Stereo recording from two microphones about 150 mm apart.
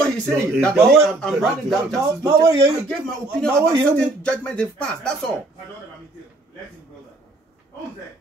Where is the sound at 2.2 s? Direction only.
20° right (ahead or behind).